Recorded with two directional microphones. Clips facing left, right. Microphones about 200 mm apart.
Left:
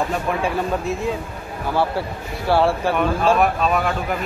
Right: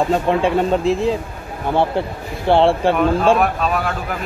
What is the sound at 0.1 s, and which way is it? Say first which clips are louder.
Speech: right 6 dB; 25° right (ahead or behind).